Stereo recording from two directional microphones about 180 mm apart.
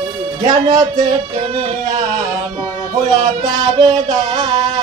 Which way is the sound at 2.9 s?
25° right (ahead or behind).